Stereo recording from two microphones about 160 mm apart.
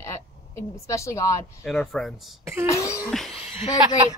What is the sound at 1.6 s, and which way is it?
Speech, centre (ahead or behind).